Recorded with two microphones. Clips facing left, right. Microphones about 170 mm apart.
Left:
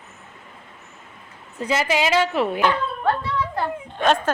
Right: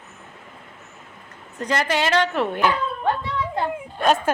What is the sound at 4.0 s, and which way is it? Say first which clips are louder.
Speech: even; 10° right (ahead or behind).